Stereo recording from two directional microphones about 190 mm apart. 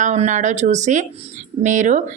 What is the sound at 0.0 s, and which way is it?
A woman's voice, 35° right (ahead or behind).